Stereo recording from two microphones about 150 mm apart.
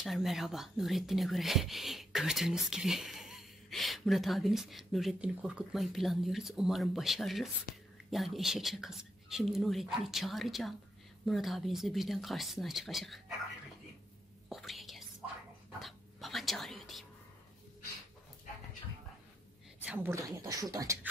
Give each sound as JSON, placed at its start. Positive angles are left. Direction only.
{"t": 0.0, "sound": "speech", "side_deg": 0}
{"t": 14.5, "sound": "whispering", "side_deg": 0}
{"t": 15.8, "sound": "a sound", "side_deg": 0}
{"t": 19.9, "sound": "a woman's voice", "side_deg": -15}
{"t": 20.2, "sound": "speech", "side_deg": -25}